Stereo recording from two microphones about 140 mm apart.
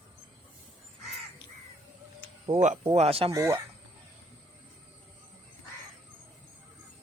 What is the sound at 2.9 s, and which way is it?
Speech, 45° right (ahead or behind).